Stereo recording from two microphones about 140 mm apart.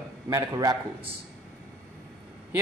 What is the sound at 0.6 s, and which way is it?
Speech, 35° right (ahead or behind).